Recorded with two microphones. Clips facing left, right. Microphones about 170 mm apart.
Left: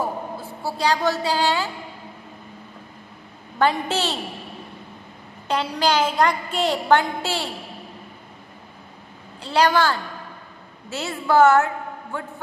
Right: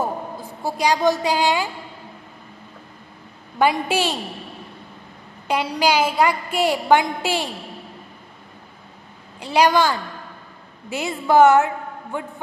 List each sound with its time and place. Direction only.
0.4 s a woman's voice: 15° right (ahead or behind)
3.5 s a woman's voice: 10° right (ahead or behind)
5.5 s a woman's voice: 10° right (ahead or behind)
9.4 s a woman's voice: 15° right (ahead or behind)